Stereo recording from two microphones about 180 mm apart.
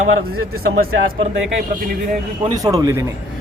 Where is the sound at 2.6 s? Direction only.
20° right (ahead or behind).